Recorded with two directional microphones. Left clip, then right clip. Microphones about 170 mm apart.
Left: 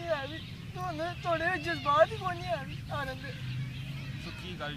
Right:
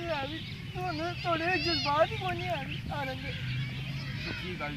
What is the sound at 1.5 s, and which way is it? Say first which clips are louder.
Speech: right 2 dB; 35° left (ahead or behind).